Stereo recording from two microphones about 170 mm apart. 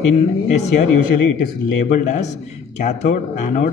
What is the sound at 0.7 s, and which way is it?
Speech, 50° left (ahead or behind).